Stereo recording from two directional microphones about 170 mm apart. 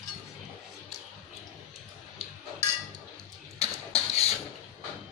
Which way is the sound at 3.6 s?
35° left (ahead or behind).